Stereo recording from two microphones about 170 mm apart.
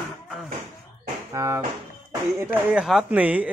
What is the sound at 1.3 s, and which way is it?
Music, 15° right (ahead or behind).